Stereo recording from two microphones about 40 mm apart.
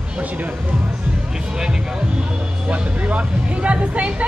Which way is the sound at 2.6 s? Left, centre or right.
Right.